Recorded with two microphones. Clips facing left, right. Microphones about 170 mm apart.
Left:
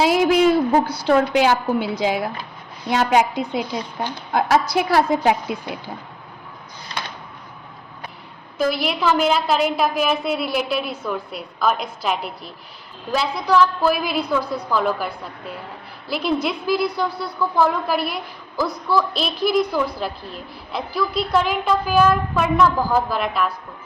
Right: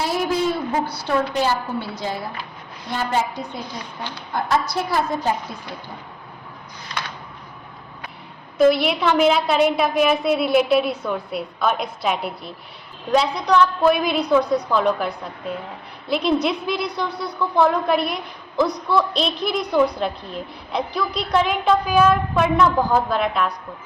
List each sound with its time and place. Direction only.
0.0 s a woman's voice: 90° left
8.7 s a woman's voice: centre (ahead or behind)